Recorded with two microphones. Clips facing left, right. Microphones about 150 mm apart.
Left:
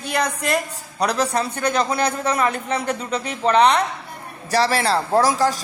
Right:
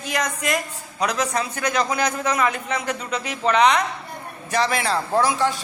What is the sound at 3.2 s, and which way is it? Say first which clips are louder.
Speech: left 2 dB; 5° right (ahead or behind).